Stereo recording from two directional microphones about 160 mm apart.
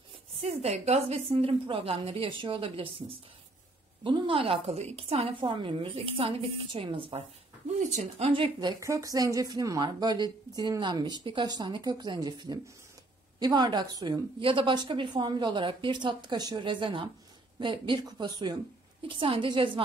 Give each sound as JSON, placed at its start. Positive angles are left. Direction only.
{"t": 0.4, "sound": "a woman's voice", "side_deg": -40}
{"t": 8.3, "sound": "a woman's voice", "side_deg": -30}